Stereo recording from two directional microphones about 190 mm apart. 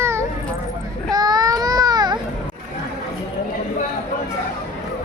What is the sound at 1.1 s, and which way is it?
Baby cry, 20° right (ahead or behind).